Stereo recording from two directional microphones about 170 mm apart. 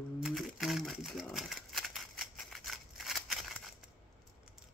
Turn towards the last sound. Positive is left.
turn(degrees=0)  # may be behind; listen again after turning